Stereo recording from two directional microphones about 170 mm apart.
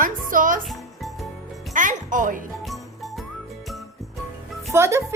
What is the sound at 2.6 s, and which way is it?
Music, centre (ahead or behind).